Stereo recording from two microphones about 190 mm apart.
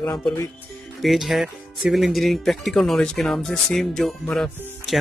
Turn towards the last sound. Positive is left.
turn(degrees=0)  # may be behind; listen again after turning